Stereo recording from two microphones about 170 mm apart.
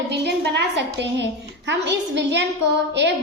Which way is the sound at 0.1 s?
85° right.